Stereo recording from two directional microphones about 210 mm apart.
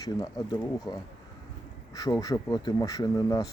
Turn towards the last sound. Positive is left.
turn(degrees=15)  # may be behind; listen again after turning